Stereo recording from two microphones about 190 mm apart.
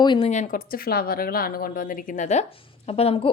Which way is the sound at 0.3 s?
40° left (ahead or behind).